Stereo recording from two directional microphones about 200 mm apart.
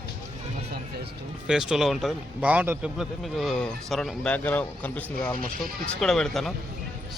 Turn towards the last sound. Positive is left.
turn(degrees=0)  # may be behind; listen again after turning